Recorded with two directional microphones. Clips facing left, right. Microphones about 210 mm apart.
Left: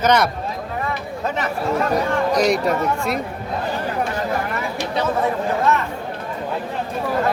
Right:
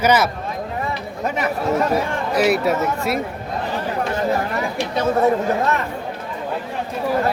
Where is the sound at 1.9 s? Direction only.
5° right (ahead or behind).